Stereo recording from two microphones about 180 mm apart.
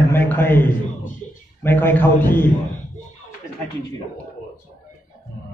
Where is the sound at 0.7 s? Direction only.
45° left (ahead or behind).